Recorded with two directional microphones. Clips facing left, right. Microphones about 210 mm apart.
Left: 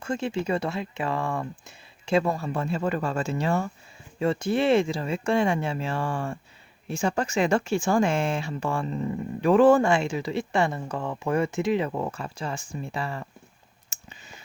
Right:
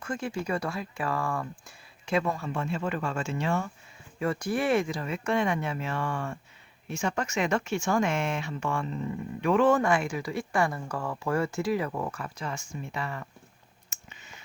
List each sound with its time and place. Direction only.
0.0 s speech: 25° left (ahead or behind)
4.2 s speech: 25° left (ahead or behind)
13.9 s a sound: 35° left (ahead or behind)